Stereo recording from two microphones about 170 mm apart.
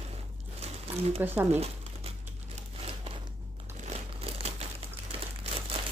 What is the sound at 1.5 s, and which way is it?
Crumpling, 35° right (ahead or behind).